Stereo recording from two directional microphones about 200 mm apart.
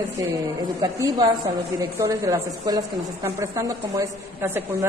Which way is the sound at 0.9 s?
20° right (ahead or behind).